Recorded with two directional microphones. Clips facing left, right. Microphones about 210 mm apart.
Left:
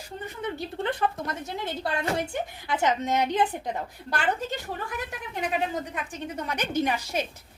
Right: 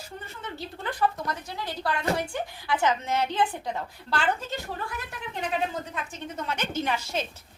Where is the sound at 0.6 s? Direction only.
25° left (ahead or behind).